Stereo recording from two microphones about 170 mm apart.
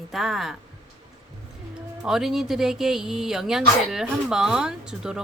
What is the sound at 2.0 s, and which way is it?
Speech, centre (ahead or behind).